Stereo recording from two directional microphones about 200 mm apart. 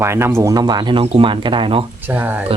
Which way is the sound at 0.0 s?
15° right (ahead or behind).